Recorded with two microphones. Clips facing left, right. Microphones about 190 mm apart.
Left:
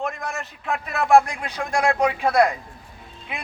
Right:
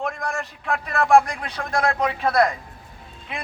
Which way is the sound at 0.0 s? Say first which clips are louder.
Right 1 dB; 5° left (ahead or behind).